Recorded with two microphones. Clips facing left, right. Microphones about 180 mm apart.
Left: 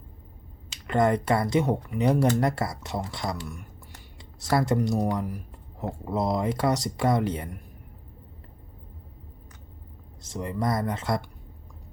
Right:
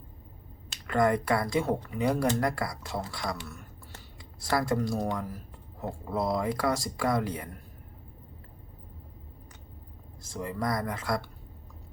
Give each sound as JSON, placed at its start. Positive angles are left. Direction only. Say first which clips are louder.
{"t": 0.9, "sound": "speech", "louder": "left 2 dB", "side_deg": 25}
{"t": 10.2, "sound": "speech", "louder": "left 3 dB", "side_deg": 20}